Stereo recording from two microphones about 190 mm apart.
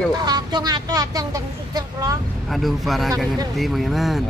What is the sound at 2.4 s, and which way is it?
Speech, centre (ahead or behind).